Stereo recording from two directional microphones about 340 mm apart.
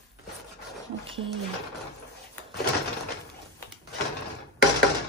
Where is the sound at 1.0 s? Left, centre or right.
Centre.